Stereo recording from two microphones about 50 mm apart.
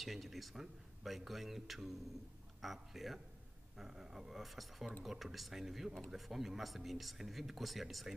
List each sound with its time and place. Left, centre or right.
0.0 s a man's voice: centre